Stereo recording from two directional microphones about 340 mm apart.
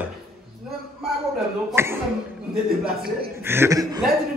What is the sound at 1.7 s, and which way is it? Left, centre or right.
Speech, centre.